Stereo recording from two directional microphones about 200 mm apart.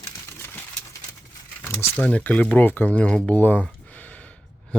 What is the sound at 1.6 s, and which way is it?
Speech, 10° left (ahead or behind).